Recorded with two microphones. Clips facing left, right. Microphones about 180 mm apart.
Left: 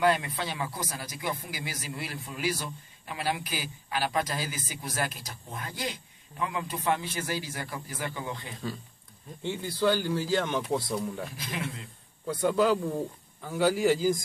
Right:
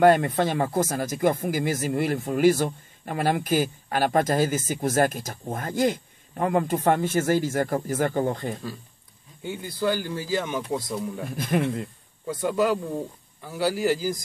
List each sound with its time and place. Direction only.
0.0 s speech: 50° right (ahead or behind)
9.4 s speech: 5° right (ahead or behind)
11.3 s speech: 50° right (ahead or behind)
12.4 s speech: 5° right (ahead or behind)